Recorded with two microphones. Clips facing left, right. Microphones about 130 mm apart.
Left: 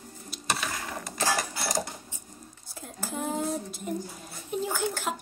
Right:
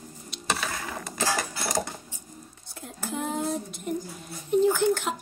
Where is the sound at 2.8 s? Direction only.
Centre (ahead or behind).